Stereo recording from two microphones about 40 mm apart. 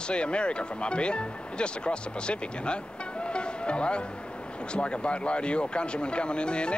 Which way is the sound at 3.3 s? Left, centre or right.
Left.